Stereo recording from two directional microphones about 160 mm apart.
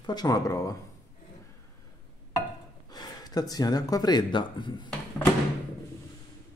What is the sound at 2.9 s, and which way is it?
Speech, 25° left (ahead or behind).